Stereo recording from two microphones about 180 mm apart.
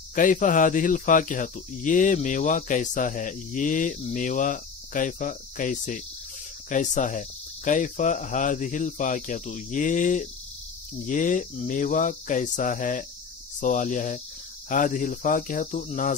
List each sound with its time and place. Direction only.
0.1 s speech: 45° left (ahead or behind)